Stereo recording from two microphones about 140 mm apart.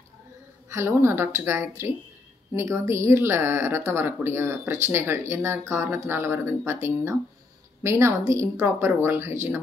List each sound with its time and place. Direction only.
0.7 s speech: 20° right (ahead or behind)